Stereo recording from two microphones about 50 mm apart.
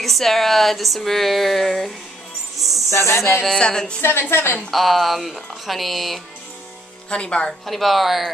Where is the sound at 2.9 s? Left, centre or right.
Left.